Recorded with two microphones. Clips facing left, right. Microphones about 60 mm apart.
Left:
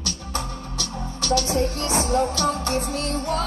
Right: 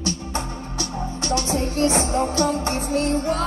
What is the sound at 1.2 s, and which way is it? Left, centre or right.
Music, right.